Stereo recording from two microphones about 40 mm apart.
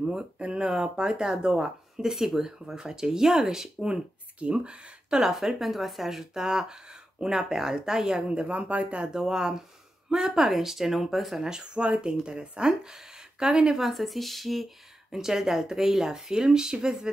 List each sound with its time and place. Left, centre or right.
0.0 s speech: right
4.4 s speech: right
5.2 s speech: centre
8.4 s speech: right
9.0 s speech: centre
13.7 s speech: centre
15.0 s speech: centre